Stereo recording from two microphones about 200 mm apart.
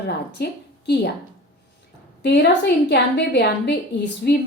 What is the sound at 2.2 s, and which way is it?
A woman's voice, 60° left (ahead or behind).